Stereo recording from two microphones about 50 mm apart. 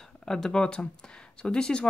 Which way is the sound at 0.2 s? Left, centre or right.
Centre.